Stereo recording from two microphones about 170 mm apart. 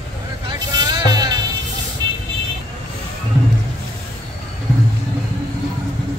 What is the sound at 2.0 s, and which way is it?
Vehicle, 25° right (ahead or behind).